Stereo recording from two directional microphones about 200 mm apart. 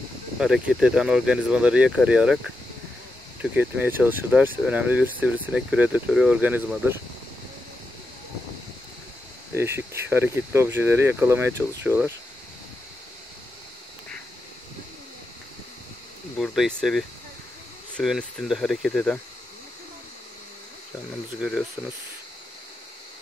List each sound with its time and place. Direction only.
0.4 s speech: 5° right (ahead or behind)
3.5 s speech: 10° right (ahead or behind)
9.6 s speech: 10° right (ahead or behind)
16.3 s speech: centre (ahead or behind)
21.4 s speech: 5° right (ahead or behind)